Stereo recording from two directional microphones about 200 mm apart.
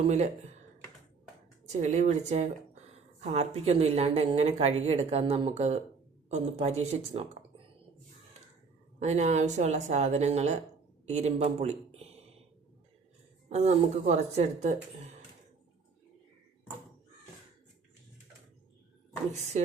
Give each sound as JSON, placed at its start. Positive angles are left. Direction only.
{"t": 1.6, "sound": "speech", "side_deg": -35}
{"t": 9.0, "sound": "speech", "side_deg": -35}
{"t": 13.5, "sound": "speech", "side_deg": -35}